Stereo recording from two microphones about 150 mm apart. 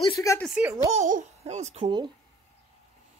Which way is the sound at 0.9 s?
55° right (ahead or behind).